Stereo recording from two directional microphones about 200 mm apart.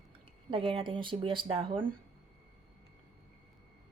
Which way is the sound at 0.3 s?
25° right (ahead or behind).